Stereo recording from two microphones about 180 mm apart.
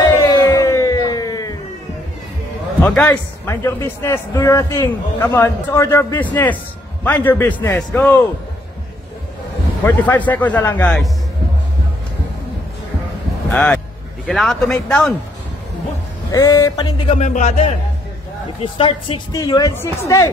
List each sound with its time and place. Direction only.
0.2 s music: 20° left (ahead or behind)
2.8 s a man's voice: 10° left (ahead or behind)
9.8 s a man's voice: 10° left (ahead or behind)
13.5 s speech: 5° left (ahead or behind)
16.3 s speech: 20° left (ahead or behind)
17.2 s speech: 45° left (ahead or behind)
18.6 s speech: 30° left (ahead or behind)